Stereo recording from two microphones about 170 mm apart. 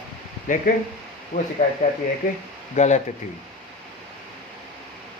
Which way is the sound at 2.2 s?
50° left (ahead or behind).